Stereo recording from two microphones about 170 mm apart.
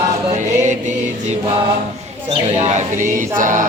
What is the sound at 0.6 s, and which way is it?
Music, 45° right (ahead or behind).